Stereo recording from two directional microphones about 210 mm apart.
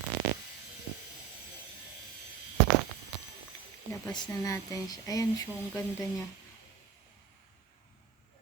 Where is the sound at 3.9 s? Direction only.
15° left (ahead or behind).